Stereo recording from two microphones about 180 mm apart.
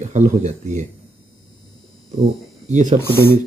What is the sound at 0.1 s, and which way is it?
Speech, 40° right (ahead or behind).